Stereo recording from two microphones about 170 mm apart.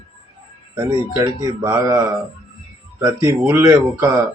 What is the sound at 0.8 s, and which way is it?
A man's voice, 25° right (ahead or behind).